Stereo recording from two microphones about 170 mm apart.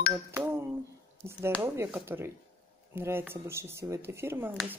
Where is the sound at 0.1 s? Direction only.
15° right (ahead or behind).